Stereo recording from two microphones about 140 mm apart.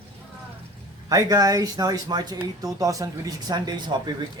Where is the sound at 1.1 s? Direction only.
25° right (ahead or behind).